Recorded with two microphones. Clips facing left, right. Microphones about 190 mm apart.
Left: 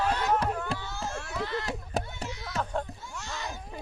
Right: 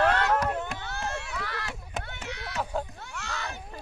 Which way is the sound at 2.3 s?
65° right (ahead or behind).